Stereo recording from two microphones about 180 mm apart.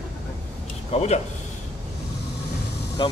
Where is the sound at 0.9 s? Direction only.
40° left (ahead or behind).